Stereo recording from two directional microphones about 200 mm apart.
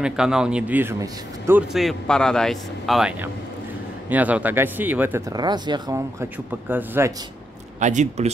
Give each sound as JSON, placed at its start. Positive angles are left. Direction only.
{"t": 0.0, "sound": "speech", "side_deg": -5}
{"t": 1.7, "sound": "speech", "side_deg": 0}
{"t": 7.8, "sound": "speech", "side_deg": -35}